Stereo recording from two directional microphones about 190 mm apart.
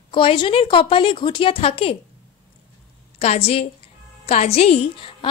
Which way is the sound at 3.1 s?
35° left (ahead or behind).